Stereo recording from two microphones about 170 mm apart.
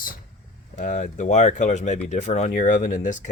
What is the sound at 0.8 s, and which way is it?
Speech, 45° left (ahead or behind).